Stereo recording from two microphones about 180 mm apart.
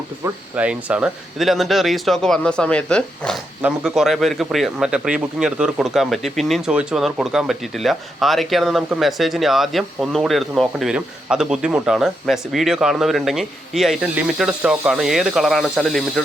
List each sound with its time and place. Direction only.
0.5 s a man's voice: 5° right (ahead or behind)